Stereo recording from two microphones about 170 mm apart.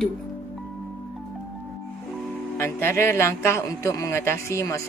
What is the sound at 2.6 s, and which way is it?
A man's voice, 15° left (ahead or behind).